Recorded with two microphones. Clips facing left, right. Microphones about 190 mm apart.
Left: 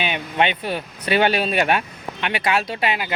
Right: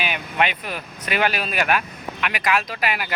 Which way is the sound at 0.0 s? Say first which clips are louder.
Left 2 dB; 30° left (ahead or behind).